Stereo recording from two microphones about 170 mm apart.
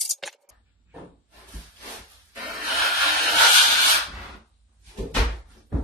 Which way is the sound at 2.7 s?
Centre (ahead or behind).